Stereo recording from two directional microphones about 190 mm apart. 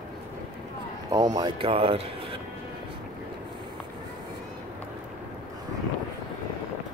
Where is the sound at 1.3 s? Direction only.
25° right (ahead or behind).